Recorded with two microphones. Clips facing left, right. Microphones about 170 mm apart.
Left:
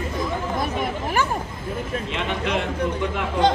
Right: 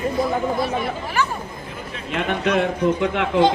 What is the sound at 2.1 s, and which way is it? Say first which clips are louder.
Speech: right 8 dB; 50° right (ahead or behind).